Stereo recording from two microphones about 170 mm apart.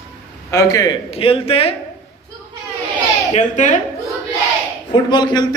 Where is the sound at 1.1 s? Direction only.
35° left (ahead or behind).